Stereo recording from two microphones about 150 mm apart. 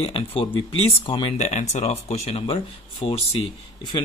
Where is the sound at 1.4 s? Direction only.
50° left (ahead or behind).